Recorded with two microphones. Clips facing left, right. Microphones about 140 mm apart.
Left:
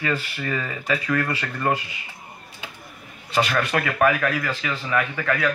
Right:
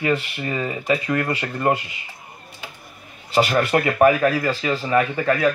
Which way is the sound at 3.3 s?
30° right (ahead or behind).